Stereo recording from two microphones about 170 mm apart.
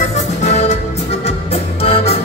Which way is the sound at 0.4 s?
40° left (ahead or behind).